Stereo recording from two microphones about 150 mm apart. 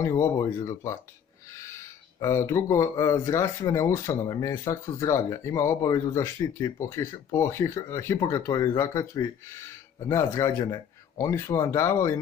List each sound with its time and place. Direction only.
0.0 s speech: 20° left (ahead or behind)
2.1 s speech: 20° left (ahead or behind)